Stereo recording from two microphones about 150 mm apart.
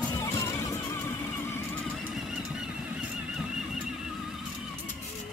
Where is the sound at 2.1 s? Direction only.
5° right (ahead or behind).